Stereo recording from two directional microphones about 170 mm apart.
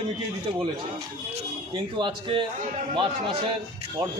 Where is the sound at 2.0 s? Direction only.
30° right (ahead or behind).